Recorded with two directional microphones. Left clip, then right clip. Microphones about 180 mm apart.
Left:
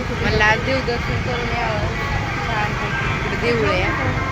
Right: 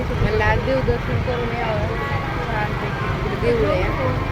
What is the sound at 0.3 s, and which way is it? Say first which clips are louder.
Vehicle: left 4 dB; centre (ahead or behind).